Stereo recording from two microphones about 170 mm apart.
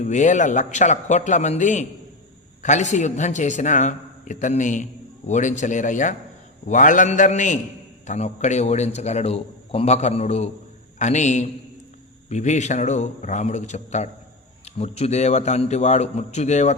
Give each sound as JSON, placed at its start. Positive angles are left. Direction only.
{"t": 0.0, "sound": "a man's voice", "side_deg": 45}